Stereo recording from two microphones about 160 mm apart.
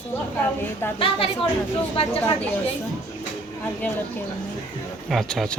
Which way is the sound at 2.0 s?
35° left (ahead or behind).